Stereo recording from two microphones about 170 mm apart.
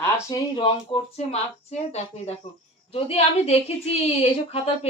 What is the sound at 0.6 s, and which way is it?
Speech, 30° left (ahead or behind).